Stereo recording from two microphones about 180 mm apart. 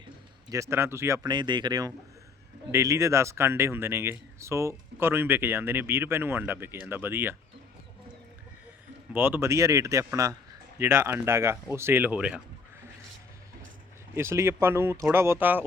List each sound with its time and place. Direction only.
0.5 s speech: 15° right (ahead or behind)
9.1 s speech: 10° right (ahead or behind)
14.2 s speech: 15° right (ahead or behind)